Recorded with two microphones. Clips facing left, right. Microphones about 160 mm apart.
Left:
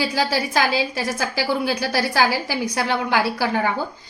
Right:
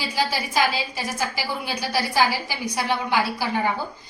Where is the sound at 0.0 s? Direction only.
90° left.